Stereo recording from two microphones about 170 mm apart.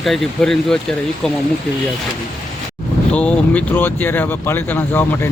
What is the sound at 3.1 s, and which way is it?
Speech, 10° left (ahead or behind).